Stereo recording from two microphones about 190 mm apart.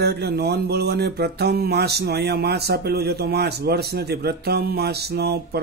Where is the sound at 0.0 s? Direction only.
60° right (ahead or behind).